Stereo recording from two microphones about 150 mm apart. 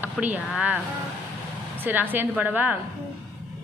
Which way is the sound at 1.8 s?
10° right (ahead or behind).